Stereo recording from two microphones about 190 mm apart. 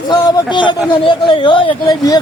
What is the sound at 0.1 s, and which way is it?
A man's voice, 25° left (ahead or behind).